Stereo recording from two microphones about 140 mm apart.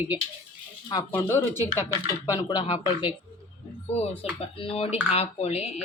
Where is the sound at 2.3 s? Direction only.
30° left (ahead or behind).